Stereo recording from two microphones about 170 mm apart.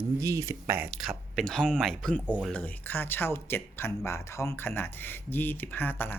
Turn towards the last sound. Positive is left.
turn(degrees=10)  # may be behind; listen again after turning